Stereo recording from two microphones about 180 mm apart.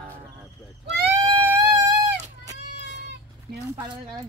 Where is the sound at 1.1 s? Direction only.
20° right (ahead or behind).